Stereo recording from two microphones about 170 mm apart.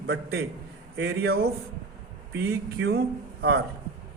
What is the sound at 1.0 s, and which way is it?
Speech, 90° right.